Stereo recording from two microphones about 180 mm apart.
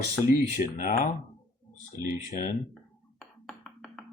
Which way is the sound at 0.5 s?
45° left (ahead or behind).